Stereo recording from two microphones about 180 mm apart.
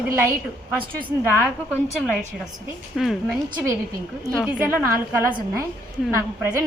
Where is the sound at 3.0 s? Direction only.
Centre (ahead or behind).